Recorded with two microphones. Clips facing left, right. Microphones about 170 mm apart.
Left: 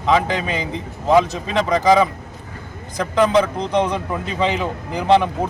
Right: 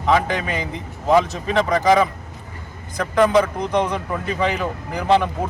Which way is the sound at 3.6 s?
20° left (ahead or behind).